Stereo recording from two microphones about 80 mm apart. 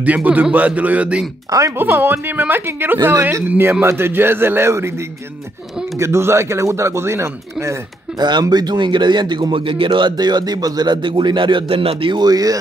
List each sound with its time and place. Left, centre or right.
0.0 s speech: centre; by 7.3 s right
8.2 s speech: right
12.3 s speech: right